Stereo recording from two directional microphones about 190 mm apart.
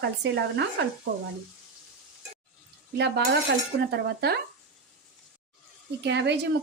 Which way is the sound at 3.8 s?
60° right (ahead or behind).